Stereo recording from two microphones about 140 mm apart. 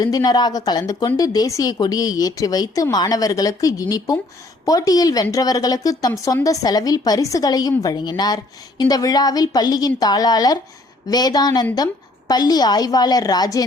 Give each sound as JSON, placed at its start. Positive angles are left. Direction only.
{"t": 0.0, "sound": "speech", "side_deg": 25}